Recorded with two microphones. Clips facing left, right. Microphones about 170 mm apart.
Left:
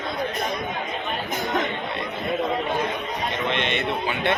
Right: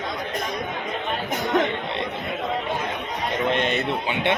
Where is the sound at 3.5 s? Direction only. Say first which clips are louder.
Right 4 dB; 40° right (ahead or behind).